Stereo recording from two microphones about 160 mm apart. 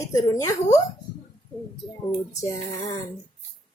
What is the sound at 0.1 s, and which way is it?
Speech, 20° left (ahead or behind).